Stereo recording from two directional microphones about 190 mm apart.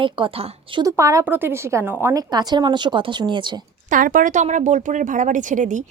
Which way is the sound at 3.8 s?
45° right (ahead or behind).